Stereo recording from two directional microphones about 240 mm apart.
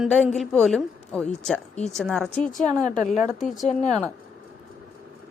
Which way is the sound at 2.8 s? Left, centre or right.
Left.